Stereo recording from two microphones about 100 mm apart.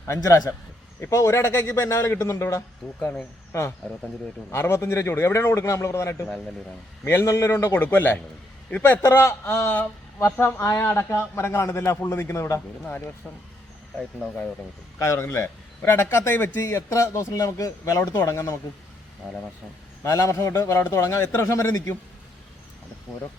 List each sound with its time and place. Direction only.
0.1 s a man's voice: 35° left (ahead or behind)
14.9 s a man's voice: 30° left (ahead or behind)
20.1 s a man's voice: 30° left (ahead or behind)